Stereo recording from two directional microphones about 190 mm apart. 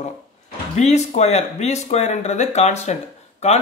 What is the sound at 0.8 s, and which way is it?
Speech, 35° left (ahead or behind).